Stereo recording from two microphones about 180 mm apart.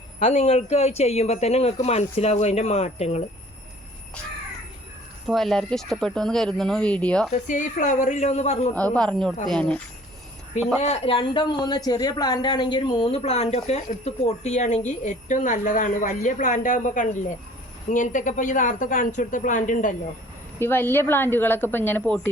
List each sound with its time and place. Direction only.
0.2 s speech: 35° left (ahead or behind)
5.2 s speech: centre (ahead or behind)
7.3 s speech: 45° left (ahead or behind)
8.7 s speech: 5° left (ahead or behind)
10.8 s speech: 35° left (ahead or behind)
20.6 s a woman's voice: 10° left (ahead or behind)